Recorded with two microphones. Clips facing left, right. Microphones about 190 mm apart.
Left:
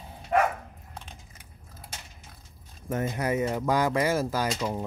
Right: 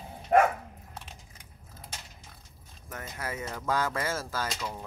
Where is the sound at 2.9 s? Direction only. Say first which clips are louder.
Left 10 dB; 20° left (ahead or behind).